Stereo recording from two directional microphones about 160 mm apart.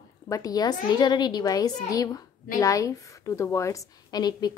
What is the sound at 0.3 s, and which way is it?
A woman's voice, 20° left (ahead or behind).